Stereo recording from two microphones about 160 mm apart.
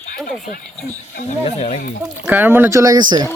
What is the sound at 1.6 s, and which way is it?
Speech, 45° left (ahead or behind).